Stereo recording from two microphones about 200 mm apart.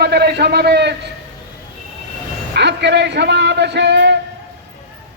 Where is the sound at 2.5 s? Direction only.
60° right (ahead or behind).